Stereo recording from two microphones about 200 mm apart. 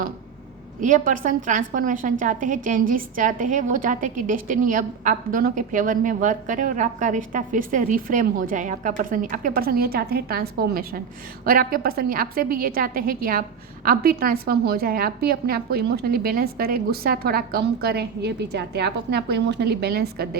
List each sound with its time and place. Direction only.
0.8 s a woman's voice: 40° right (ahead or behind)